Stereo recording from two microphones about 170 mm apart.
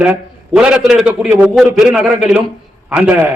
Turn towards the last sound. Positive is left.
turn(degrees=-5)  # may be behind; listen again after turning